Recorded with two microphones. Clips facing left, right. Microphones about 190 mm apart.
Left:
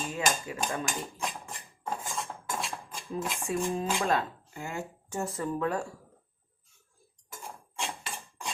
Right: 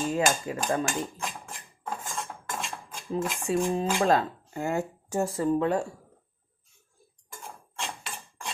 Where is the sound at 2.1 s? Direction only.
Centre (ahead or behind).